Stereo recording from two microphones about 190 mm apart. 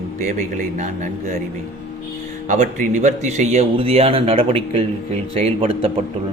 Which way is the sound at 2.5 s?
40° right (ahead or behind).